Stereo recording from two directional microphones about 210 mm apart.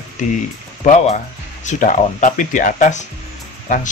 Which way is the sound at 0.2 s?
35° left (ahead or behind).